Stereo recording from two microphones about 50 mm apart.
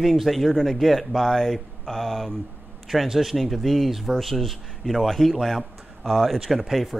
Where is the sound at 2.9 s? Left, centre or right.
Centre.